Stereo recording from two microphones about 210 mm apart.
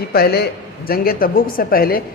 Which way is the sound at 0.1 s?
50° left (ahead or behind).